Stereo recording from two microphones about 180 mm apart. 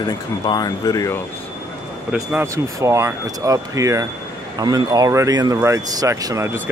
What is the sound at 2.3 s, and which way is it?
Speech, 15° right (ahead or behind).